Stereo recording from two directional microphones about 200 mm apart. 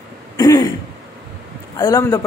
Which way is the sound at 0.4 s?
20° left (ahead or behind).